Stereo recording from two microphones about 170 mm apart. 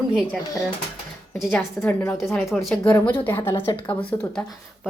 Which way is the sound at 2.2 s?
Centre (ahead or behind).